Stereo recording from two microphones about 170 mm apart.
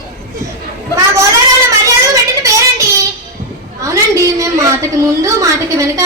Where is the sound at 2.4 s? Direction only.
20° right (ahead or behind).